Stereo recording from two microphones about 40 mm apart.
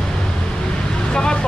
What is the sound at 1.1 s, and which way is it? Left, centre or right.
Speech, left.